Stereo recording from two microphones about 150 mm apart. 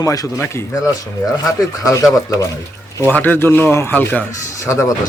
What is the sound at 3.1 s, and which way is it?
A man's voice, 10° left (ahead or behind).